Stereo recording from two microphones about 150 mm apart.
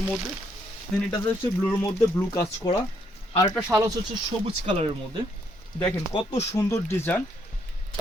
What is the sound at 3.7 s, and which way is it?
Speech, 20° right (ahead or behind).